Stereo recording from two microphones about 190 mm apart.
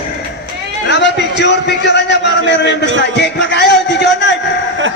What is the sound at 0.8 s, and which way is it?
A man's voice, 70° left (ahead or behind).